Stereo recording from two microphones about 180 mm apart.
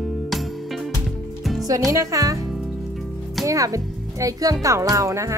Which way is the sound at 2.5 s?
Centre (ahead or behind).